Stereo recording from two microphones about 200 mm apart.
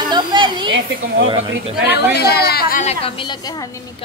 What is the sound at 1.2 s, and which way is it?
Speech, 25° right (ahead or behind).